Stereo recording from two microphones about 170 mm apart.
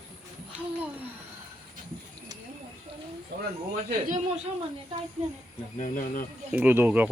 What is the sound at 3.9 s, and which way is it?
Speech, 50° right (ahead or behind).